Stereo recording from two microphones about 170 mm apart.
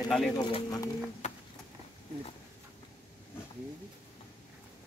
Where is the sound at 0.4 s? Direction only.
35° left (ahead or behind).